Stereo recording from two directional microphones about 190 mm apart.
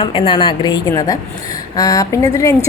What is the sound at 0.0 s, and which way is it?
A woman's voice, 25° left (ahead or behind).